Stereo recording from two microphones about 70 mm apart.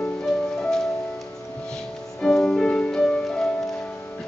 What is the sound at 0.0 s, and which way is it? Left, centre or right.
Music, centre.